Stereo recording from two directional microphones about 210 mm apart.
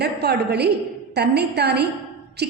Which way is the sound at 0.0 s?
50° right (ahead or behind).